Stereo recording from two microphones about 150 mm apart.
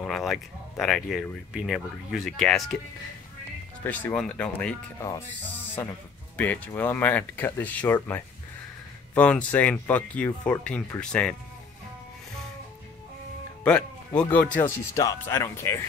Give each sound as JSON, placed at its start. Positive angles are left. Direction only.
{"t": 0.0, "sound": "speech", "side_deg": 0}
{"t": 3.8, "sound": "speech", "side_deg": 5}
{"t": 6.3, "sound": "speech", "side_deg": 10}
{"t": 13.7, "sound": "speech", "side_deg": 10}